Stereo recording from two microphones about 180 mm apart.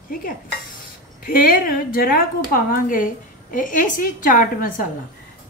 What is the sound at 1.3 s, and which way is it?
A woman's voice, 50° left (ahead or behind).